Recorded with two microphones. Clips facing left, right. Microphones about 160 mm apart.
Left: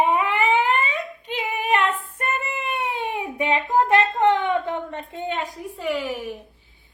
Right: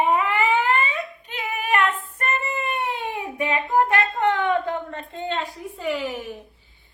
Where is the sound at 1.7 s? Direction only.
15° left (ahead or behind).